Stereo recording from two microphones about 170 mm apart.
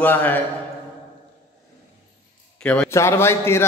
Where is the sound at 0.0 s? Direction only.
10° left (ahead or behind).